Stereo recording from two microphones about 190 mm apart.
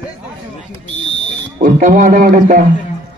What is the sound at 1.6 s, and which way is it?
A man's voice, 45° right (ahead or behind).